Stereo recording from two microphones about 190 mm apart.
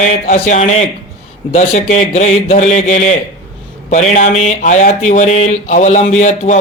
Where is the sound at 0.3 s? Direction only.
40° left (ahead or behind).